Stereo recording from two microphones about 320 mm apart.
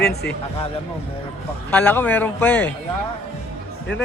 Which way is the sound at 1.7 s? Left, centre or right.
Centre.